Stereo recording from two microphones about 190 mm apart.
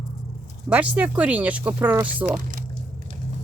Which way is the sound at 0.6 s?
5° right (ahead or behind).